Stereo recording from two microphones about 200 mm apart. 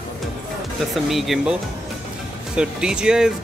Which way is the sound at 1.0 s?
Centre (ahead or behind).